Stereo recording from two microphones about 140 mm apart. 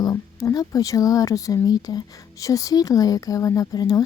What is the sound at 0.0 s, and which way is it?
Speech, 25° left (ahead or behind).